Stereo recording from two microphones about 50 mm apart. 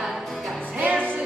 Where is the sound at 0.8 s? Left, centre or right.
Right.